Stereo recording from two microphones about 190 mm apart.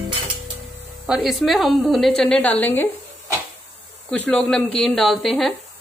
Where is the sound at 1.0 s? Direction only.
Centre (ahead or behind).